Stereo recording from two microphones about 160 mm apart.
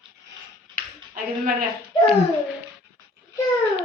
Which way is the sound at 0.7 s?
60° right (ahead or behind).